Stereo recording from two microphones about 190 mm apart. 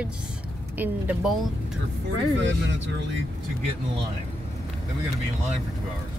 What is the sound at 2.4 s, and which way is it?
Speech, 75° right (ahead or behind).